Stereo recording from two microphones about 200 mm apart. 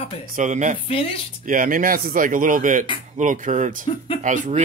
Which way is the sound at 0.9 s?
30° left (ahead or behind).